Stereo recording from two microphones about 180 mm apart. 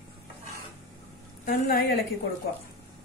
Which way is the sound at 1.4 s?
55° left (ahead or behind).